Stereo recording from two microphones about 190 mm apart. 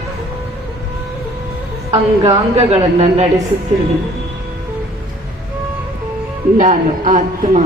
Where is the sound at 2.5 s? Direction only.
35° right (ahead or behind).